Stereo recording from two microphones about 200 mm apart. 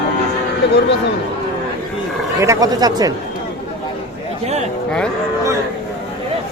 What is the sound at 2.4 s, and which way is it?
Speech, 15° right (ahead or behind).